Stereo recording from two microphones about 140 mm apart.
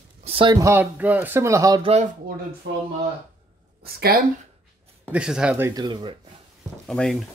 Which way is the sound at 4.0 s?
90° right.